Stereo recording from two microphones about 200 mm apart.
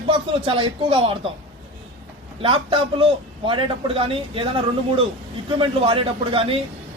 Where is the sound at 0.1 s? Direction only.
25° right (ahead or behind).